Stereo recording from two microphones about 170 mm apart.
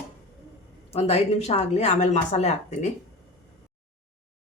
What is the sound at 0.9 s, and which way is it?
Speech, 35° left (ahead or behind).